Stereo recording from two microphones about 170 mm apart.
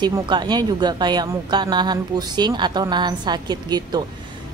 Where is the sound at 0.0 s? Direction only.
25° right (ahead or behind).